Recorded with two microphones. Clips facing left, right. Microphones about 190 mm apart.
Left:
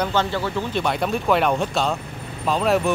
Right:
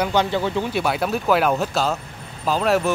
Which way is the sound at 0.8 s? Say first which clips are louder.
Even; 5° right (ahead or behind).